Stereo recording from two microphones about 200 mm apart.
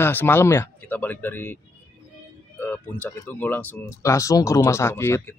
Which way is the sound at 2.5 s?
10° left (ahead or behind).